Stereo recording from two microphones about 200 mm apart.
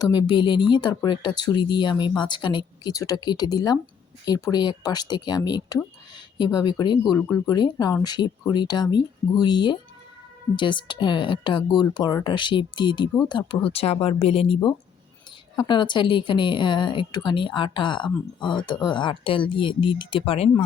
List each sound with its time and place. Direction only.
0.0 s a woman's voice: 20° left (ahead or behind)